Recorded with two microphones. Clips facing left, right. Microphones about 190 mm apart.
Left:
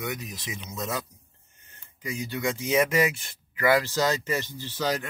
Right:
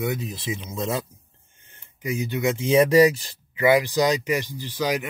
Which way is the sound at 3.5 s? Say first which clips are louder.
Right 4 dB; 20° right (ahead or behind).